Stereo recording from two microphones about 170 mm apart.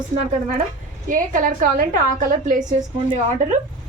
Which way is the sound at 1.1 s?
50° right (ahead or behind).